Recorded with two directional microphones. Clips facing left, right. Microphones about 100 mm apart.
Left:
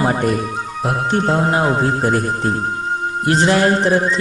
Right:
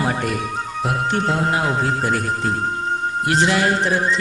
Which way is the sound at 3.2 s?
35° left (ahead or behind).